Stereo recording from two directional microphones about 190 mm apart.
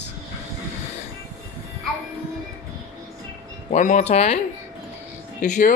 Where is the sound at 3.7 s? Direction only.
40° left (ahead or behind).